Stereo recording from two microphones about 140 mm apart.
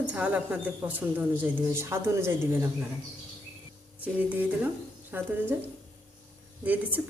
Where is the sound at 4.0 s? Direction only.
10° right (ahead or behind).